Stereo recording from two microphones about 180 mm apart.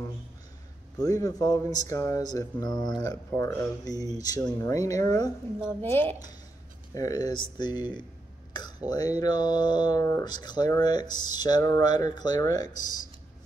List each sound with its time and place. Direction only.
0.9 s a woman's voice: 20° left (ahead or behind)